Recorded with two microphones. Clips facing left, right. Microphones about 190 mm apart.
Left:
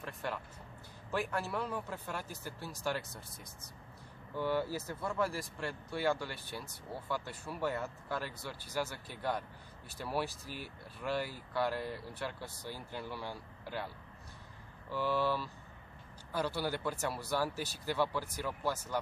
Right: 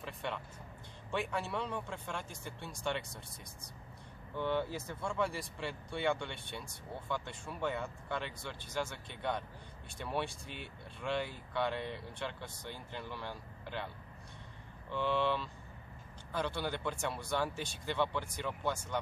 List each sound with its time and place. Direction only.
0.0 s vehicle: centre (ahead or behind)
1.1 s speech: centre (ahead or behind)
4.4 s speech: 5° left (ahead or behind)
14.9 s speech: 5° left (ahead or behind)